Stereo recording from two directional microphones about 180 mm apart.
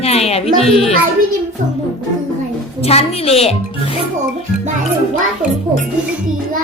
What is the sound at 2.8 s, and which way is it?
Speech, 35° left (ahead or behind).